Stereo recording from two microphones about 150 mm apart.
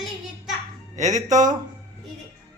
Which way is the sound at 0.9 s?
50° right (ahead or behind).